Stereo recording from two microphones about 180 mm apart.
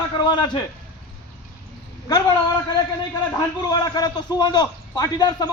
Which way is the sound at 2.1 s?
20° left (ahead or behind).